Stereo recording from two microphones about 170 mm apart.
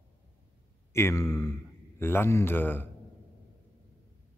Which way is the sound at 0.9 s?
15° left (ahead or behind).